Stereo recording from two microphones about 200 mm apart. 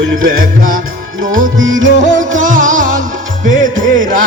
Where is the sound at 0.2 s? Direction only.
45° right (ahead or behind).